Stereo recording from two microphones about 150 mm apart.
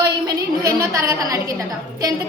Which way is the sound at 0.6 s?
20° right (ahead or behind).